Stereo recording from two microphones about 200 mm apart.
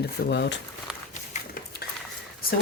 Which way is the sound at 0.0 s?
60° left (ahead or behind).